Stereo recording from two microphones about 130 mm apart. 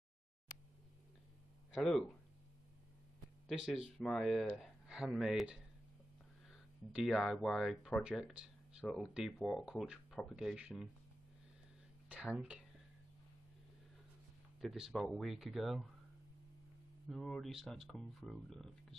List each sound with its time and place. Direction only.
1.7 s speech: 5° left (ahead or behind)
3.4 s speech: 5° right (ahead or behind)
12.1 s speech: 5° right (ahead or behind)
14.6 s speech: centre (ahead or behind)
17.1 s speech: 5° left (ahead or behind)